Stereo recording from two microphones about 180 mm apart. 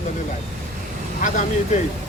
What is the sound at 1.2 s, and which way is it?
Speech, 45° left (ahead or behind).